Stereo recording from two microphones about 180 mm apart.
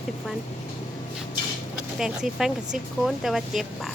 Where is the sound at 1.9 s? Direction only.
Centre (ahead or behind).